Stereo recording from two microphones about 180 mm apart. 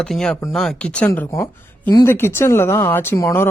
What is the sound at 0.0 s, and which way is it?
Speech, 5° left (ahead or behind).